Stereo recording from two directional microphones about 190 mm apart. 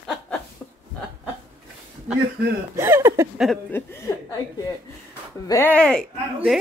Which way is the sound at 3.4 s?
Centre (ahead or behind).